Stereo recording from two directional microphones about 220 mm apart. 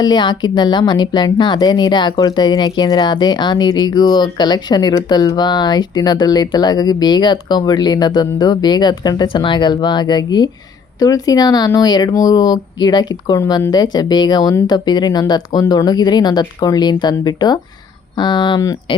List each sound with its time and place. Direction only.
0.0 s speech: 20° left (ahead or behind)